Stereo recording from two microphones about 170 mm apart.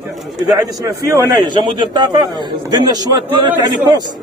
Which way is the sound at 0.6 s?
20° right (ahead or behind).